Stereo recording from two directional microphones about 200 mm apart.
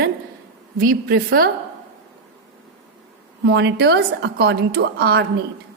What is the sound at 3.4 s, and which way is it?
A woman's voice, 60° right (ahead or behind).